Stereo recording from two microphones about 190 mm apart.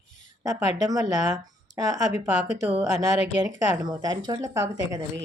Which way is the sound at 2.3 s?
40° left (ahead or behind).